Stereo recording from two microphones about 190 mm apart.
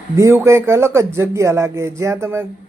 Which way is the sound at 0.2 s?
15° right (ahead or behind).